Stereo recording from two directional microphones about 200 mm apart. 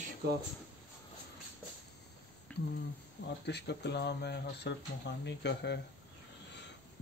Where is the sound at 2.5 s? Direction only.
5° left (ahead or behind).